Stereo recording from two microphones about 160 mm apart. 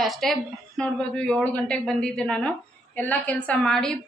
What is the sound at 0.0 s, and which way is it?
A woman's voice, centre (ahead or behind).